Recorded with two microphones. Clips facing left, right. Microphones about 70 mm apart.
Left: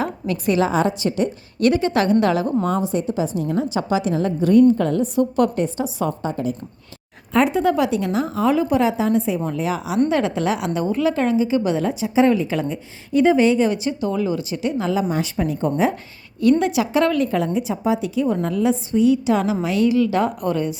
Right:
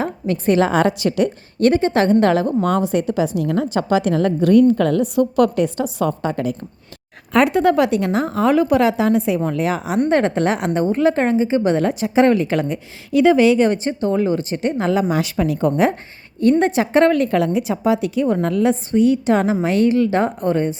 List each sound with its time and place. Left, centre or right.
0.0 s a woman's voice: right
1.5 s a woman's voice: right
2.6 s a woman's voice: right
7.3 s a woman's voice: right
13.7 s speech: right
16.4 s speech: right
17.2 s a woman's voice: right